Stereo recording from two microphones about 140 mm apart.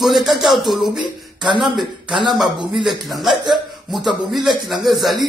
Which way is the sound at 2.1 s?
35° right (ahead or behind).